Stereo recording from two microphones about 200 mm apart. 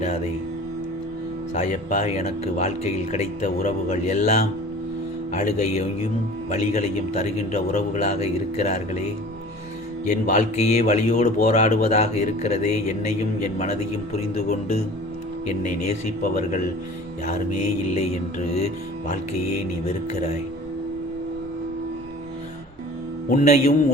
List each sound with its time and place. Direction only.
1.5 s speech: 35° left (ahead or behind)
10.1 s speech: 35° left (ahead or behind)
15.9 s speech: 40° left (ahead or behind)
23.3 s speech: 40° left (ahead or behind)